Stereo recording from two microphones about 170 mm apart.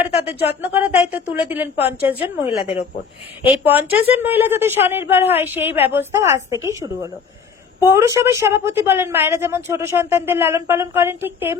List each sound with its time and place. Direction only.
0.3 s speech: 10° right (ahead or behind)
3.7 s speech: 10° right (ahead or behind)